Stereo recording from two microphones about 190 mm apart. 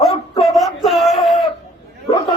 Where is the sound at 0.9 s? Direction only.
Centre (ahead or behind).